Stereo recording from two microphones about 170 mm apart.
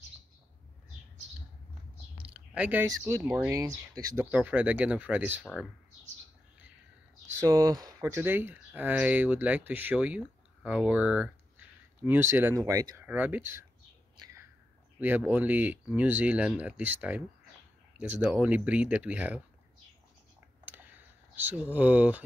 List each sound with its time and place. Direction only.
2.1 s speech: 5° right (ahead or behind)
7.2 s speech: 15° right (ahead or behind)
14.1 s a sound: 25° right (ahead or behind)
15.0 s speech: 10° right (ahead or behind)
18.2 s speech: 10° right (ahead or behind)
20.6 s a sound: 10° right (ahead or behind)